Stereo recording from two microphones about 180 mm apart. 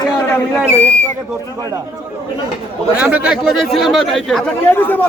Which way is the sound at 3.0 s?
5° right (ahead or behind).